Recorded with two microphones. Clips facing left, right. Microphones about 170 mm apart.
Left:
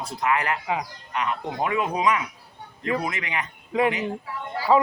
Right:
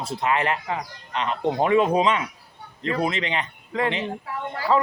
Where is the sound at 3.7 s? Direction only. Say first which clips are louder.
Left 3 dB; 15° left (ahead or behind).